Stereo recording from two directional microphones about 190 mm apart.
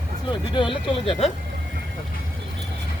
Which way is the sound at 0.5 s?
25° left (ahead or behind).